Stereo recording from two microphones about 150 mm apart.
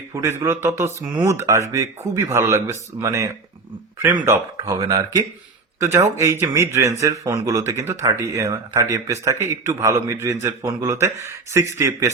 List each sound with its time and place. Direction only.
0.1 s speech: 20° right (ahead or behind)
4.6 s speech: 25° right (ahead or behind)